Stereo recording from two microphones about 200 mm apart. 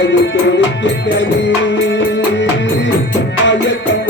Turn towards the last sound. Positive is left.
turn(degrees=60)  # may be behind; listen again after turning